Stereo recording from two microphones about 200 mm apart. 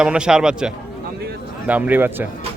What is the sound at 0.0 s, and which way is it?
A man's voice, 5° right (ahead or behind).